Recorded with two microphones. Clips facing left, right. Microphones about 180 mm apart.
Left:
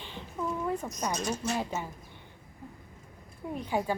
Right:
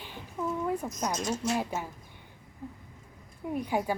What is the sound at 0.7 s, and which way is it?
A woman's voice, centre (ahead or behind).